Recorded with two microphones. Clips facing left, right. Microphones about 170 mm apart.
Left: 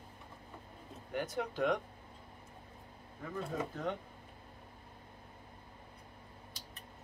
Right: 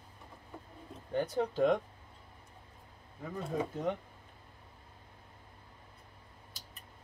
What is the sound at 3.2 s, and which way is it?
Speech, 15° right (ahead or behind).